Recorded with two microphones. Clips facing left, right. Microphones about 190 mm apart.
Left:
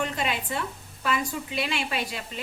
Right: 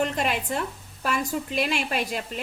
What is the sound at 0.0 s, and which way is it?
A woman's voice, 45° right (ahead or behind).